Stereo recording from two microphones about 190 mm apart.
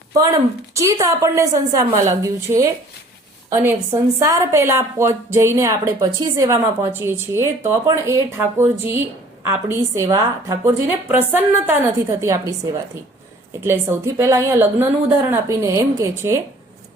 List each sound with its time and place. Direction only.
0.8 s a woman's voice: 15° right (ahead or behind)
13.6 s a woman's voice: 15° right (ahead or behind)